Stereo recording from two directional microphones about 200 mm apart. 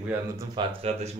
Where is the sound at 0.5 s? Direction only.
30° right (ahead or behind).